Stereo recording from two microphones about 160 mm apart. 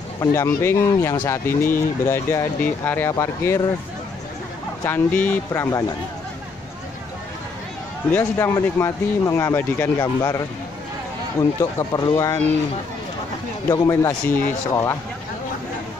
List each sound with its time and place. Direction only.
0.2 s speech: 15° left (ahead or behind)
4.8 s speech: 10° left (ahead or behind)
8.1 s speech: 15° left (ahead or behind)
13.8 s speech: 15° left (ahead or behind)